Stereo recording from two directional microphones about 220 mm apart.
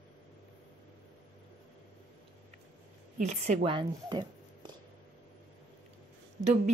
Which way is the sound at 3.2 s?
30° right (ahead or behind).